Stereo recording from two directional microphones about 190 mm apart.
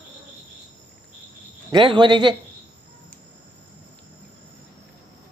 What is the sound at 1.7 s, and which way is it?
Speech, 25° right (ahead or behind).